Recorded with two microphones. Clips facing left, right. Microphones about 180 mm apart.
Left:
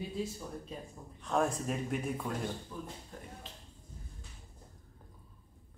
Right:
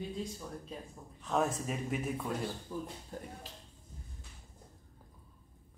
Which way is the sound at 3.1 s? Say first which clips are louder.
Right 4 dB; 35° right (ahead or behind).